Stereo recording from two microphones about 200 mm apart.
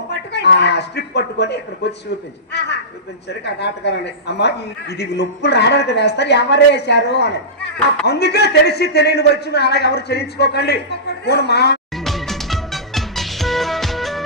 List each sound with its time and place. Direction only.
0.1 s speech: 60° left (ahead or behind)
2.5 s a sound: 55° left (ahead or behind)
3.2 s a woman's voice: 60° left (ahead or behind)
11.9 s music: centre (ahead or behind)